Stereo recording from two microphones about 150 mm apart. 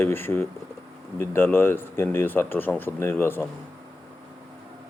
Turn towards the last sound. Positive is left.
turn(degrees=15)  # may be behind; listen again after turning